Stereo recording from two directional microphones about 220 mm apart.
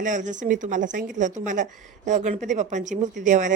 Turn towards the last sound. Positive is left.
turn(degrees=-35)  # may be behind; listen again after turning